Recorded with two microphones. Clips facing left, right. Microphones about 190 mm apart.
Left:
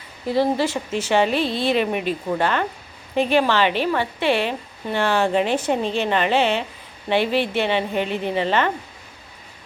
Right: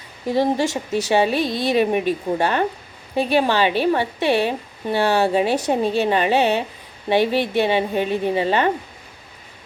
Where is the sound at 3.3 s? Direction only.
15° right (ahead or behind).